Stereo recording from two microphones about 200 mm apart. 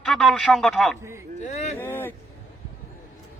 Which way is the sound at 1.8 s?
10° left (ahead or behind).